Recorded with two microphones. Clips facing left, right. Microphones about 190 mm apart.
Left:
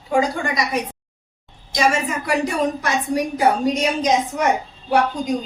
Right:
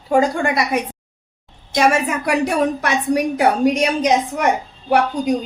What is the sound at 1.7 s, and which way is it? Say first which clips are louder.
A woman's voice: right 3 dB; 65° right (ahead or behind).